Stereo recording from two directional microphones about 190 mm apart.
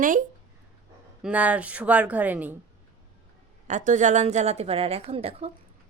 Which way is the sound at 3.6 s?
40° right (ahead or behind).